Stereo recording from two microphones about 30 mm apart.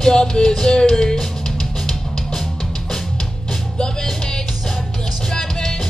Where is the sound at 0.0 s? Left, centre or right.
Left.